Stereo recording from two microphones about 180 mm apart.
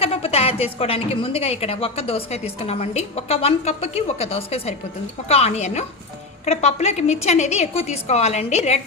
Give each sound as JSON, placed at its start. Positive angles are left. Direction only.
{"t": 0.0, "sound": "a woman's voice", "side_deg": 35}